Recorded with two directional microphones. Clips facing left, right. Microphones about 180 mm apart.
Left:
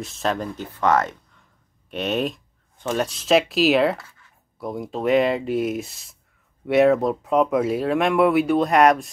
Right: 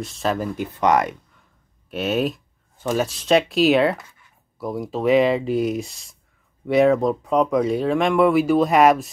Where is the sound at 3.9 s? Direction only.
15° right (ahead or behind).